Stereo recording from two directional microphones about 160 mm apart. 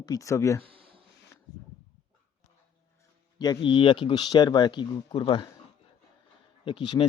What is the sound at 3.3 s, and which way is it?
Speech, 30° left (ahead or behind).